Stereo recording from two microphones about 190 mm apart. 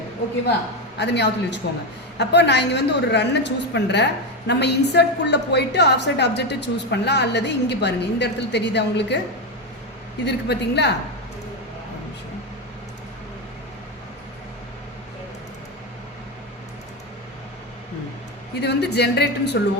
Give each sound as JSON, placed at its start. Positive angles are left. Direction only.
{"t": 0.9, "sound": "a woman's voice", "side_deg": 65}
{"t": 10.2, "sound": "a woman's voice", "side_deg": 60}
{"t": 18.6, "sound": "a woman's voice", "side_deg": 60}